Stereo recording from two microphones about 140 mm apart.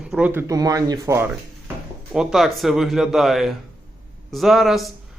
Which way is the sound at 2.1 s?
Centre (ahead or behind).